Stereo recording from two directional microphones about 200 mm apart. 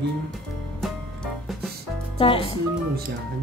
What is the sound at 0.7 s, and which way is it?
Music, centre (ahead or behind).